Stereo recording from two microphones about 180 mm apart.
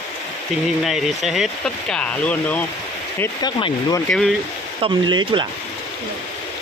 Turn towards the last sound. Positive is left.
turn(degrees=-25)  # may be behind; listen again after turning